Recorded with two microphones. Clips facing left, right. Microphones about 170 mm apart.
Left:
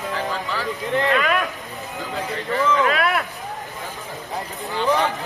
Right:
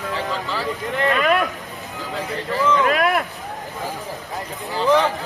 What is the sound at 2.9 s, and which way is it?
Boat, 40° right (ahead or behind).